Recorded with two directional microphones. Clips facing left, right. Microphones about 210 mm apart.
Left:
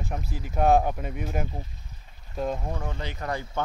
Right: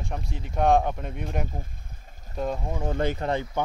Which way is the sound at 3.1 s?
25° right (ahead or behind).